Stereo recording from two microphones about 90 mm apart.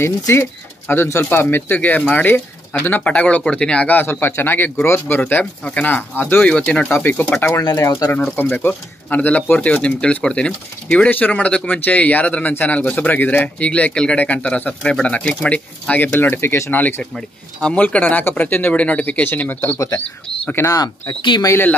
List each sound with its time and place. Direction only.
0.0 s speech: 25° left (ahead or behind)
6.5 s speech: 10° left (ahead or behind)
7.3 s speech: 30° left (ahead or behind)
8.4 s speech: 20° left (ahead or behind)
17.0 s speech: 10° left (ahead or behind)
20.5 s speech: 40° left (ahead or behind)